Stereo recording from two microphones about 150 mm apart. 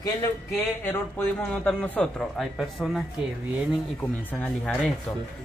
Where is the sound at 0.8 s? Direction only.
15° left (ahead or behind).